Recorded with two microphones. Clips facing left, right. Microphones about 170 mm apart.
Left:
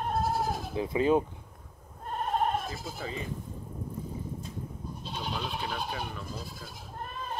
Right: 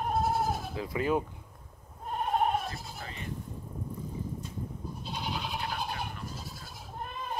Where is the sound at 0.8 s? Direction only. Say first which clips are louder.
Left 6 dB; 20° left (ahead or behind).